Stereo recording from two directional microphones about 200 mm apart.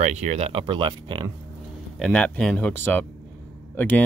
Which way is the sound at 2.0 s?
5° left (ahead or behind).